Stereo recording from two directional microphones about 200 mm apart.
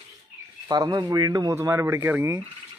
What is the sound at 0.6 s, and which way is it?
Speech, 20° right (ahead or behind).